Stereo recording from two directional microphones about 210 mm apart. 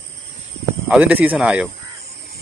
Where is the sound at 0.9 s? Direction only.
5° right (ahead or behind).